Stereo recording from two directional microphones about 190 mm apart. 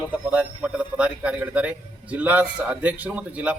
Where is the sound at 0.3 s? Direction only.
5° right (ahead or behind).